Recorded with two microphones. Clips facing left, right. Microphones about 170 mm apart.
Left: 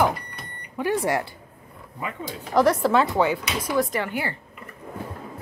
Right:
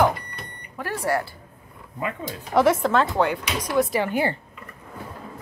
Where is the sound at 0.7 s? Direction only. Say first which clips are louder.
Left 2 dB; 15° left (ahead or behind).